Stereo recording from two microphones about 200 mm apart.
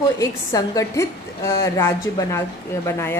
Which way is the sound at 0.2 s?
15° left (ahead or behind).